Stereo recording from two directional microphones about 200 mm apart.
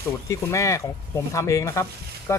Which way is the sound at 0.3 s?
15° left (ahead or behind).